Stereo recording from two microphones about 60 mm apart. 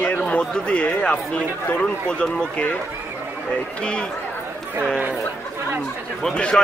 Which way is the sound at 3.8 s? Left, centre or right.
Centre.